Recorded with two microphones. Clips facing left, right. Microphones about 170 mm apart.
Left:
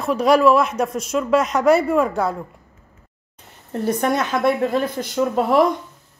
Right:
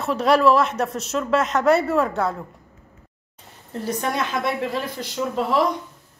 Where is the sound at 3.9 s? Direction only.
50° left (ahead or behind).